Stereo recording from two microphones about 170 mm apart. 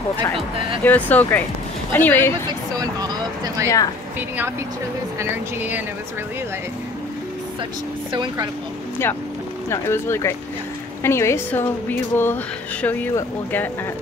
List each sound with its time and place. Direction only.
0.8 s speech: 10° left (ahead or behind)
2.7 s speech: 20° right (ahead or behind)
3.6 s speech: 20° left (ahead or behind)
5.2 s speech: 10° right (ahead or behind)
8.1 s speech: 25° right (ahead or behind)
9.7 s speech: 15° left (ahead or behind)